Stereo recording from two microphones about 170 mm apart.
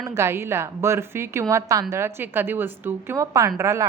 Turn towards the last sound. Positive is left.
turn(degrees=-20)  # may be behind; listen again after turning